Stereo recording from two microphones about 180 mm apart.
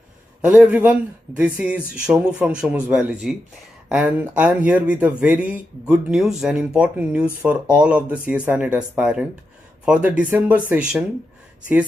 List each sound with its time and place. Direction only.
0.6 s speech: 10° right (ahead or behind)